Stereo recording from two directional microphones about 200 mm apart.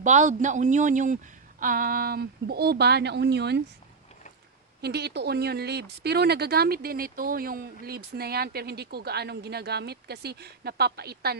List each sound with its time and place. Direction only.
0.0 s speech: 40° right (ahead or behind); by 3.6 s 55° right (ahead or behind)
4.8 s speech: 55° right (ahead or behind)